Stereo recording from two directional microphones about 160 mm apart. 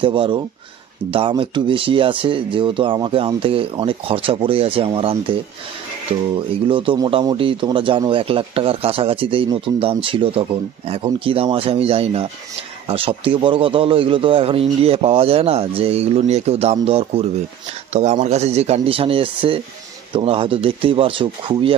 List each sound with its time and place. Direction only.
0.0 s speech: 30° right (ahead or behind)
6.3 s speech: 30° right (ahead or behind)